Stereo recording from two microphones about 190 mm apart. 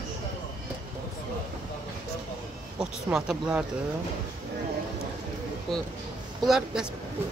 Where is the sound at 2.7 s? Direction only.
5° right (ahead or behind).